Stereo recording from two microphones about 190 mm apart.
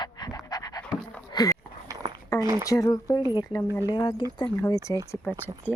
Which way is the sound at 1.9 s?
20° right (ahead or behind).